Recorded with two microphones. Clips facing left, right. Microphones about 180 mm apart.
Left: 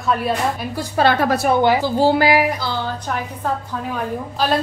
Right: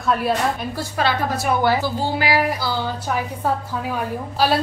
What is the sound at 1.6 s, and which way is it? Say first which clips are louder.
Speech: left 3 dB; 15° left (ahead or behind).